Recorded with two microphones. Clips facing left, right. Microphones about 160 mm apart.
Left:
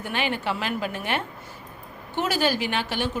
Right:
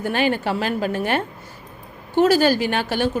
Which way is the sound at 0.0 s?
45° right (ahead or behind).